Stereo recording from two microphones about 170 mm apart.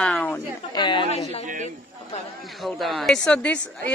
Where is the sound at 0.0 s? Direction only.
10° left (ahead or behind).